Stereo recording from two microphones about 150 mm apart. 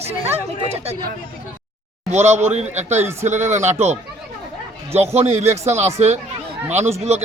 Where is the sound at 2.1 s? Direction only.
45° right (ahead or behind).